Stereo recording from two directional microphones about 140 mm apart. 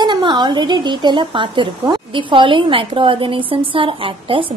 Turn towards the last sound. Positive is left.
turn(degrees=-40)  # may be behind; listen again after turning